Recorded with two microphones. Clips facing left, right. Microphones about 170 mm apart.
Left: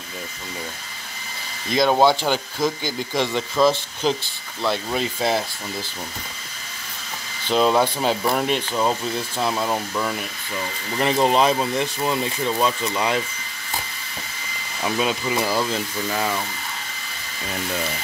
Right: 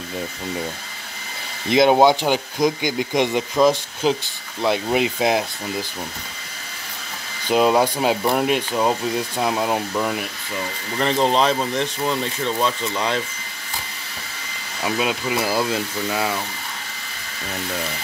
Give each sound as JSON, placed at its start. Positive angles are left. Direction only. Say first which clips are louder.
{"t": 1.7, "sound": "speech", "louder": "right 3 dB", "side_deg": -20}
{"t": 7.4, "sound": "speech", "louder": "right 2 dB", "side_deg": -10}
{"t": 11.0, "sound": "speech", "louder": "even", "side_deg": 10}
{"t": 14.8, "sound": "speech", "louder": "even", "side_deg": -5}